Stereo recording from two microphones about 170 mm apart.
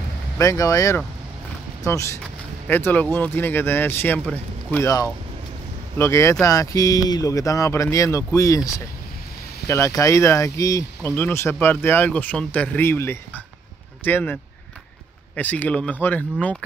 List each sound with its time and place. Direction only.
0.4 s speech: 20° left (ahead or behind)